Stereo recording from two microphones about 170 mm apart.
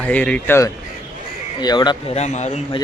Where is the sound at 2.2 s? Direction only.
40° left (ahead or behind).